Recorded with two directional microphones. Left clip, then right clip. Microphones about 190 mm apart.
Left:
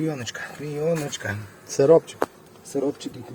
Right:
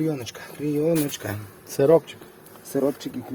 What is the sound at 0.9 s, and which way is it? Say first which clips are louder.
Speech: right 2 dB; 50° right (ahead or behind).